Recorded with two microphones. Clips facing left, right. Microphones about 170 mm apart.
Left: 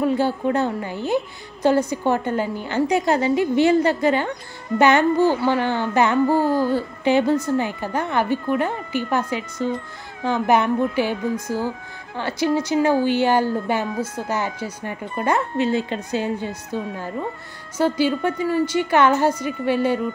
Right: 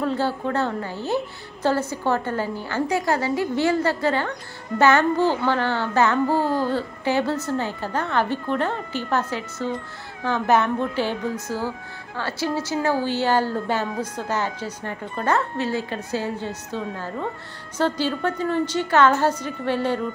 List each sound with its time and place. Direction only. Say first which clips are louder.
0.0 s a woman's voice: left 4 dB; 15° left (ahead or behind)
10.2 s a woman's voice: left 2 dB; 15° left (ahead or behind)